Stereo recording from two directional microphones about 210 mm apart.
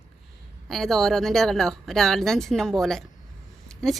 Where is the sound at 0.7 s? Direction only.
Centre (ahead or behind).